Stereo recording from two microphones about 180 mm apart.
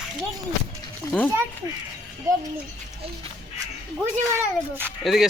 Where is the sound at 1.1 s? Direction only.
Centre (ahead or behind).